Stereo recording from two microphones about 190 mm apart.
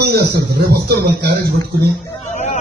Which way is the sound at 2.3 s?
40° left (ahead or behind).